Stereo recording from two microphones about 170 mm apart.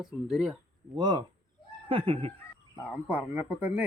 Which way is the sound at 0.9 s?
25° right (ahead or behind).